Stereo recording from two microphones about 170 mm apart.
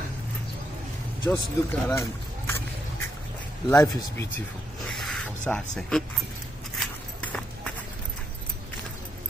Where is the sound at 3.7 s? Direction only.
15° left (ahead or behind).